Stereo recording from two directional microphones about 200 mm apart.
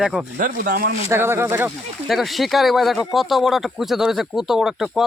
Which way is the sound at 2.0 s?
Centre (ahead or behind).